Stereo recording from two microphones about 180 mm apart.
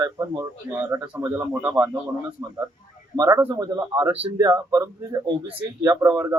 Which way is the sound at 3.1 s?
20° right (ahead or behind).